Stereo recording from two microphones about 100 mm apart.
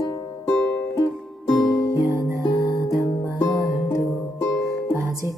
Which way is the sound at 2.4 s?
35° left (ahead or behind).